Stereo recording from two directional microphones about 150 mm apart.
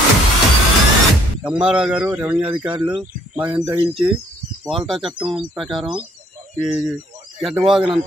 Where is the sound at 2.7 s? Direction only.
30° right (ahead or behind).